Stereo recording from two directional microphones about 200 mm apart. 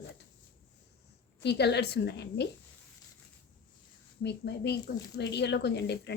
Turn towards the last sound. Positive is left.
turn(degrees=55)  # may be behind; listen again after turning